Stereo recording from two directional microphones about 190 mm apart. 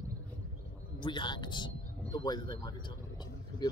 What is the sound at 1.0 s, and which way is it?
Speech, 25° left (ahead or behind).